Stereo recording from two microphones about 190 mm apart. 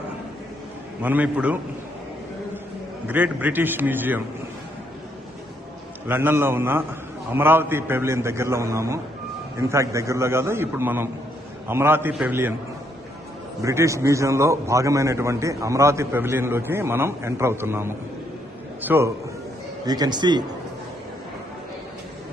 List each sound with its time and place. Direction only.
1.0 s a man's voice: 10° right (ahead or behind)
3.1 s a man's voice: 10° right (ahead or behind)
6.1 s a man's voice: 10° right (ahead or behind)
13.6 s a man's voice: 15° right (ahead or behind)